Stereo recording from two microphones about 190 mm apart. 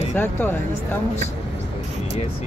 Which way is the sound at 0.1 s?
10° left (ahead or behind).